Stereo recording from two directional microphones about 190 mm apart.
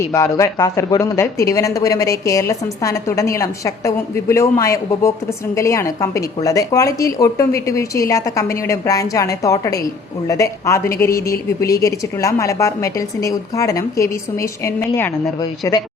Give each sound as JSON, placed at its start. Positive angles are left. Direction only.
{"t": 0.1, "sound": "speech", "side_deg": 15}